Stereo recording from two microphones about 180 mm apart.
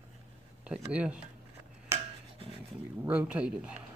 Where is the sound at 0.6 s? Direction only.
5° right (ahead or behind).